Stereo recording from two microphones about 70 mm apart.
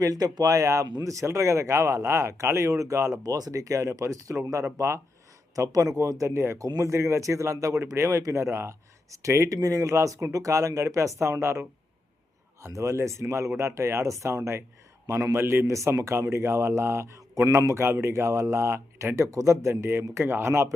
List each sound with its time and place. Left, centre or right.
0.0 s speech: right
3.2 s speech: right
5.5 s speech: right
12.6 s speech: right